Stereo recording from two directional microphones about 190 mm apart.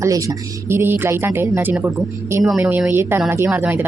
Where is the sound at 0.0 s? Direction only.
15° right (ahead or behind).